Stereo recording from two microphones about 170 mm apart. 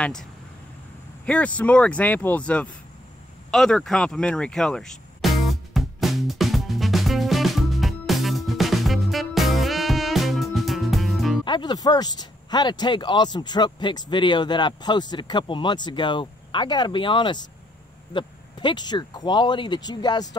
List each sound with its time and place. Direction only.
0.0 s speech: 5° left (ahead or behind)
3.5 s music: centre (ahead or behind)
11.4 s speech: 25° left (ahead or behind)